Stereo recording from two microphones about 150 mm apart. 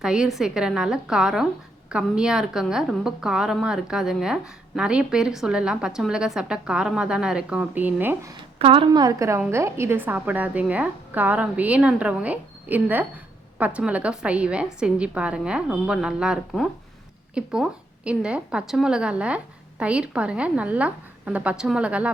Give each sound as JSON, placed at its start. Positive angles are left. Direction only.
{"t": 0.0, "sound": "a woman's voice", "side_deg": -5}
{"t": 8.5, "sound": "a woman's voice", "side_deg": -35}